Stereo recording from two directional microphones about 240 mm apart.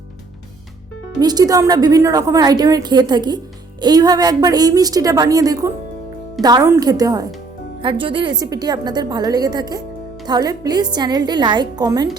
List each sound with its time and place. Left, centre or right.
1.2 s a woman's voice: centre